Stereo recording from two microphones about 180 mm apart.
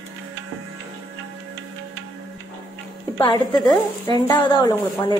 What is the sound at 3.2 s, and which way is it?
A woman's voice, 25° left (ahead or behind).